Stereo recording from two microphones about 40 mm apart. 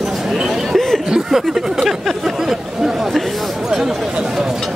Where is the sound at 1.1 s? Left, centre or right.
Centre.